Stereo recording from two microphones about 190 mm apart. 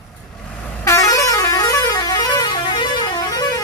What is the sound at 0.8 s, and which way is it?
Vehicle horn, 15° left (ahead or behind).